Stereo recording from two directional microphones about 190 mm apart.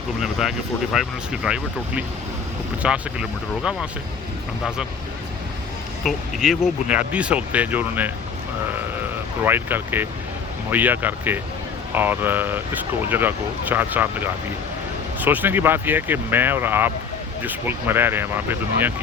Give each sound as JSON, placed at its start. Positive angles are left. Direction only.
{"t": 0.2, "sound": "speech", "side_deg": 0}
{"t": 6.1, "sound": "speech", "side_deg": 0}
{"t": 9.4, "sound": "speech", "side_deg": -10}